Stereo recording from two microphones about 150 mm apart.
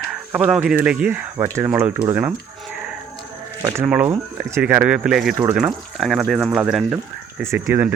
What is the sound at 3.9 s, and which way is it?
Speech, 5° right (ahead or behind).